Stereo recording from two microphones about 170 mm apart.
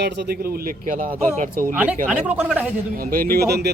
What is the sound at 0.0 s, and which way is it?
A man's voice, 70° right (ahead or behind).